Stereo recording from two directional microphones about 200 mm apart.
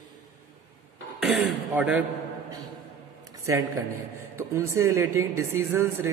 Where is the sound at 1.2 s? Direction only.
Centre (ahead or behind).